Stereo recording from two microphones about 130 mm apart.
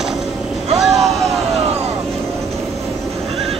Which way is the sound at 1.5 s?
50° right (ahead or behind).